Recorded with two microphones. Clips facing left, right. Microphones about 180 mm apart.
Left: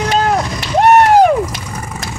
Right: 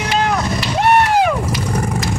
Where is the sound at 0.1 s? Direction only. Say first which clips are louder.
Even; 45° left (ahead or behind).